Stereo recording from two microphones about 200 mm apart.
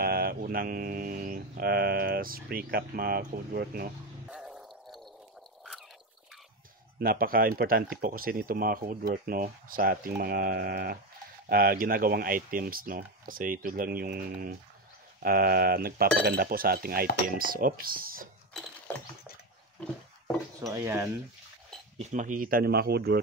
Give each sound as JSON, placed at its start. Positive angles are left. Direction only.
{"t": 0.0, "sound": "speech", "side_deg": -50}
{"t": 4.3, "sound": "gargling", "side_deg": -5}
{"t": 7.0, "sound": "speech", "side_deg": -45}
{"t": 18.9, "sound": "a sound", "side_deg": 10}
{"t": 19.8, "sound": "speech", "side_deg": 5}
{"t": 20.7, "sound": "speech", "side_deg": -15}
{"t": 22.1, "sound": "speech", "side_deg": -40}